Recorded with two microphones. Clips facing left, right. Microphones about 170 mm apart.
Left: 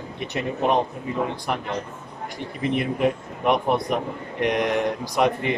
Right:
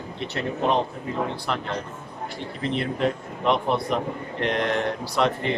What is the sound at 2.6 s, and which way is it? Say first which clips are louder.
Speech: left 3 dB; 15° left (ahead or behind).